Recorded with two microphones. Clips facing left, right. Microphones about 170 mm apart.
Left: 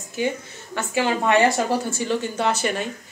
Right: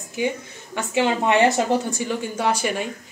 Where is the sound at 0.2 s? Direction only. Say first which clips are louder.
Even; 15° right (ahead or behind).